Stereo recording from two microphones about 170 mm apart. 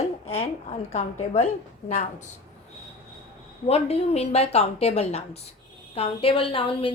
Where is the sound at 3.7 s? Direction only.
35° left (ahead or behind).